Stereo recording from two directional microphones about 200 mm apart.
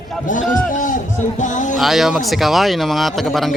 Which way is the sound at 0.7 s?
40° left (ahead or behind).